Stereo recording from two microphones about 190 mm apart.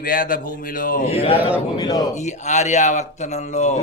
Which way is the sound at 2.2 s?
40° left (ahead or behind).